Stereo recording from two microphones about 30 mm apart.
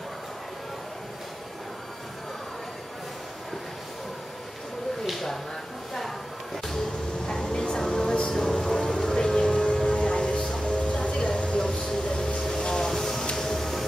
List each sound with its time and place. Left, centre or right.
5.0 s a sound: centre
5.9 s slam: centre
7.2 s vehicle: left
8.8 s train: centre
10.7 s music: left
11.4 s a sound: left
12.0 s printer: left
12.4 s vehicle: left
13.4 s a sound: centre